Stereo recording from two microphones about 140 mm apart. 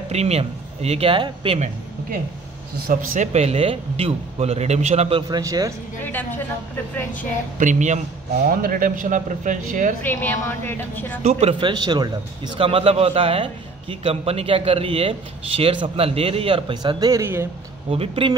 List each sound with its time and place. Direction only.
0.1 s speech: 50° right (ahead or behind)
2.9 s speech: 75° right (ahead or behind)
3.3 s a man's voice: 45° right (ahead or behind)
5.3 s a man's voice: 25° right (ahead or behind)
6.0 s a woman's voice: 15° left (ahead or behind)
7.5 s speech: 60° right (ahead or behind)
8.5 s speech: 80° right; by 9.9 s 65° right (ahead or behind)
10.0 s a woman's voice: 15° left (ahead or behind)
11.6 s a man's voice: 30° right (ahead or behind)
12.5 s a man's voice: 40° right (ahead or behind); by 17.5 s 20° right (ahead or behind)
17.9 s a man's voice: 40° right (ahead or behind)